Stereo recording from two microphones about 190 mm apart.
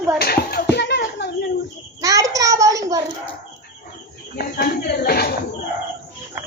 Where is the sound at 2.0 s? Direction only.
15° right (ahead or behind).